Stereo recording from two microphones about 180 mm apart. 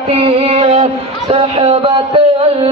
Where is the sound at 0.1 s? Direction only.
35° right (ahead or behind).